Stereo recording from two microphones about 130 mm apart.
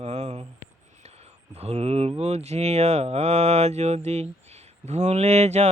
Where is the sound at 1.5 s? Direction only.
55° right (ahead or behind).